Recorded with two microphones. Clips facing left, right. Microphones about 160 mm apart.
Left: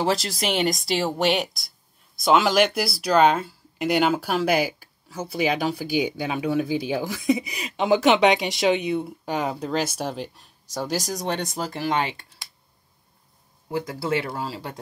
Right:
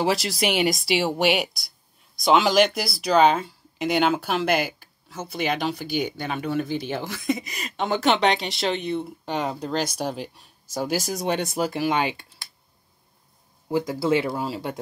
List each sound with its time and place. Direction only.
0.0 s speech: 5° right (ahead or behind)
13.7 s speech: 25° right (ahead or behind)